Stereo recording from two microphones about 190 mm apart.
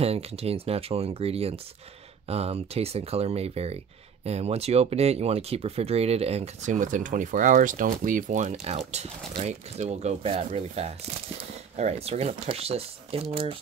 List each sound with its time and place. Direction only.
0.0 s speech: 30° right (ahead or behind)